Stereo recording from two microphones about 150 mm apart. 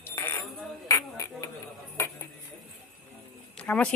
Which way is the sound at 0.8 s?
20° left (ahead or behind).